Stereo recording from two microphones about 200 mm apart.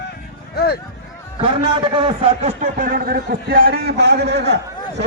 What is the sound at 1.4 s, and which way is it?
A man's voice, 25° right (ahead or behind).